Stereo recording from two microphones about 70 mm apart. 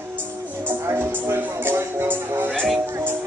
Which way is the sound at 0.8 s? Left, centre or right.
Right.